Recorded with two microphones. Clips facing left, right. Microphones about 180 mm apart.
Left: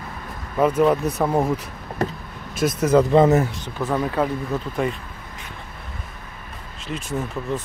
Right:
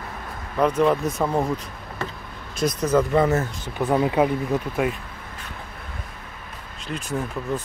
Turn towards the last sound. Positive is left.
turn(degrees=0)  # may be behind; listen again after turning